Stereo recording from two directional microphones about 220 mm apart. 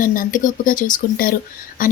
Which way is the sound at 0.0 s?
40° left (ahead or behind).